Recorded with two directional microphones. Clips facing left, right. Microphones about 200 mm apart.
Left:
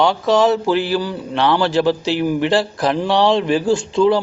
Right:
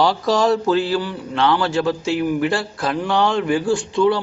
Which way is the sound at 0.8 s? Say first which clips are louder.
Left 2 dB; 30° left (ahead or behind).